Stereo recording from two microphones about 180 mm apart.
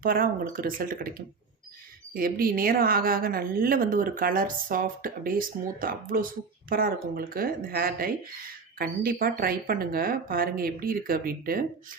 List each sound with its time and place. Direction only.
0.0 s a woman's voice: 50° right (ahead or behind)